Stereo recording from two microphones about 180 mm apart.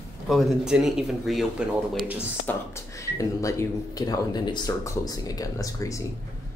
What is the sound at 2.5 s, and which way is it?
Speech, 15° left (ahead or behind).